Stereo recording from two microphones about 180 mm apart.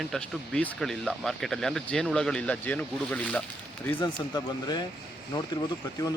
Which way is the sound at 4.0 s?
25° left (ahead or behind).